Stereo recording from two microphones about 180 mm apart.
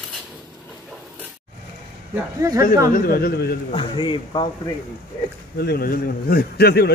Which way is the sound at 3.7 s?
25° left (ahead or behind).